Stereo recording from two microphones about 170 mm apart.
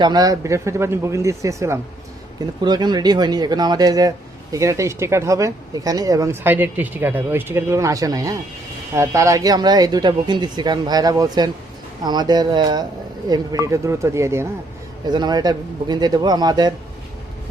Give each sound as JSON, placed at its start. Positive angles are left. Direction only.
{"t": 0.0, "sound": "speech", "side_deg": -25}